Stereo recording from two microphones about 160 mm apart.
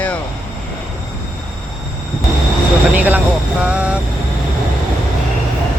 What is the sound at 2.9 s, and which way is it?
Speech, 10° right (ahead or behind).